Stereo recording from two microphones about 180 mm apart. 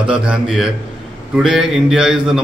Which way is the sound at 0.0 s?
5° right (ahead or behind).